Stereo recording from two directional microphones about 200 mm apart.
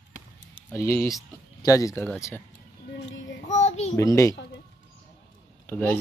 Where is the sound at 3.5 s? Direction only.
35° left (ahead or behind).